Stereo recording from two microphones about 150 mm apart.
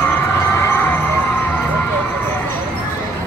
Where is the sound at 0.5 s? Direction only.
15° left (ahead or behind).